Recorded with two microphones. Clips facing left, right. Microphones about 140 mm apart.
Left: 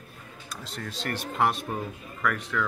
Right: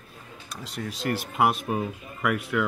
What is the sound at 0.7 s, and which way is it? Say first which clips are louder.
Speech: right 5 dB; 10° right (ahead or behind).